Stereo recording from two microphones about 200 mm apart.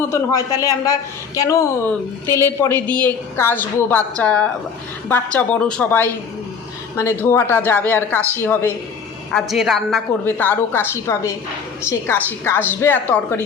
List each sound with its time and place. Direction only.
0.0 s a woman's voice: 15° left (ahead or behind)
9.3 s a woman's voice: centre (ahead or behind)
10.2 s a woman's voice: 10° left (ahead or behind)